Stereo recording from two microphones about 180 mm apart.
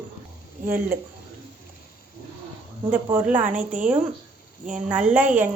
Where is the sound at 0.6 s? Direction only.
55° right (ahead or behind).